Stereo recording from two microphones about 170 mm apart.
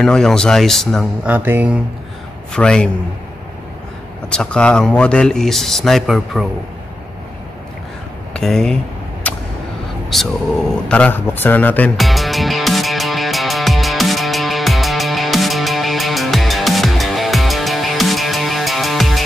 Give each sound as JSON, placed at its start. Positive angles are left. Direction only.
{"t": 0.0, "sound": "speech", "side_deg": 5}
{"t": 1.2, "sound": "speech", "side_deg": -10}
{"t": 2.5, "sound": "speech", "side_deg": 5}
{"t": 4.3, "sound": "speech", "side_deg": 5}
{"t": 8.3, "sound": "speech", "side_deg": 5}
{"t": 9.3, "sound": "a sound", "side_deg": 10}
{"t": 10.1, "sound": "speech", "side_deg": 0}
{"t": 10.9, "sound": "music", "side_deg": 10}